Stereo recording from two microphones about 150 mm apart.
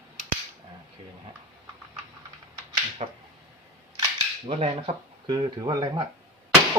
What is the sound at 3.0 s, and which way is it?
Finger snapping, 45° right (ahead or behind).